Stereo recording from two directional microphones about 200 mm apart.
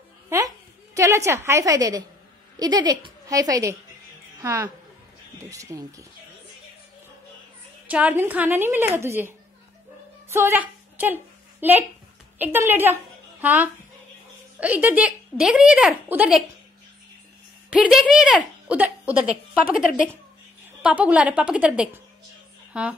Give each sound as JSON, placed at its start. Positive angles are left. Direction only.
{"t": 0.9, "sound": "a woman's voice", "side_deg": -15}
{"t": 7.9, "sound": "a woman's voice", "side_deg": -10}
{"t": 10.3, "sound": "a woman's voice", "side_deg": -10}
{"t": 17.6, "sound": "speech", "side_deg": -5}
{"t": 20.8, "sound": "speech", "side_deg": -5}